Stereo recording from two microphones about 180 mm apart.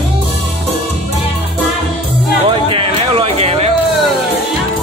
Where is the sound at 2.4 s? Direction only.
30° right (ahead or behind).